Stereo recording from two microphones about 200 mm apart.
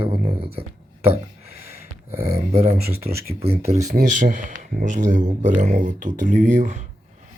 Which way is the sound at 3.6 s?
35° right (ahead or behind).